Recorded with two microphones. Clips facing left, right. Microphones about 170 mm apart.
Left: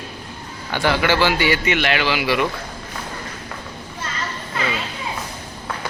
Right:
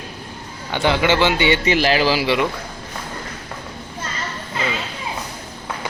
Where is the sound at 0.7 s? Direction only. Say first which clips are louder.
Right 1 dB; 20° right (ahead or behind).